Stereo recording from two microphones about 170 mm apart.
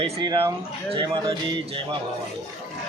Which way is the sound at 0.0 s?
30° right (ahead or behind).